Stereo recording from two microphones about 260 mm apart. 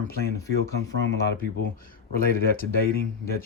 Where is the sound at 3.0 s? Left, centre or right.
Left.